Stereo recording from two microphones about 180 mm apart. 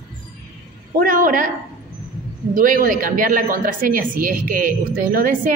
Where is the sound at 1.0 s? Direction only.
50° right (ahead or behind).